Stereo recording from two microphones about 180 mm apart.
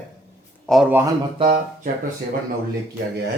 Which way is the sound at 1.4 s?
55° right (ahead or behind).